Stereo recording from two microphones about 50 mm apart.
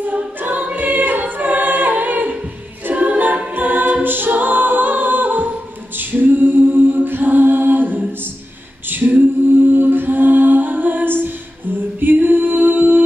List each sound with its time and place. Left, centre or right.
0.4 s choir: right
2.9 s a capella: right